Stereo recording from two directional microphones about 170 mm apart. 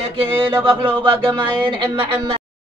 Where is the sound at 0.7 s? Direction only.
30° right (ahead or behind).